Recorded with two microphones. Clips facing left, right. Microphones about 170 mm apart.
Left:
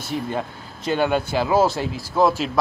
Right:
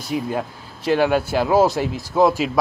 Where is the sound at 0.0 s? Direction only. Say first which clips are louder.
Right 2 dB; centre (ahead or behind).